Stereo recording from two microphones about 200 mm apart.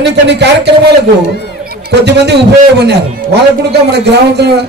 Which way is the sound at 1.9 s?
55° right (ahead or behind).